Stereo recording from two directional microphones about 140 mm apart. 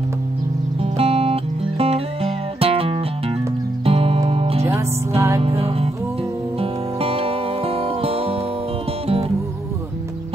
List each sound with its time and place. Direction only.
0.9 s music: 45° right (ahead or behind)
4.6 s music: 15° right (ahead or behind)
5.4 s music: 45° right (ahead or behind)